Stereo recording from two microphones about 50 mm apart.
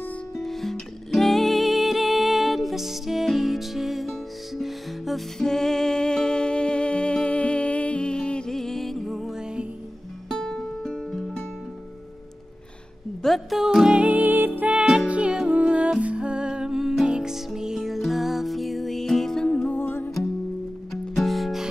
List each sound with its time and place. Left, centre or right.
0.4 s music: centre
5.4 s music: centre
8.5 s music: centre
10.3 s music: centre
13.2 s music: centre
14.0 s music: right
14.7 s music: centre
15.0 s music: right; by 19.4 s centre
19.4 s music: centre
19.7 s music: left
20.9 s music: centre